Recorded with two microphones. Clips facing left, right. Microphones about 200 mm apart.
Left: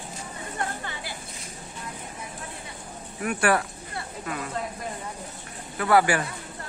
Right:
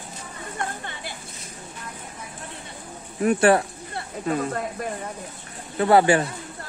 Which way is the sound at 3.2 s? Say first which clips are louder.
Right 6 dB; 25° right (ahead or behind).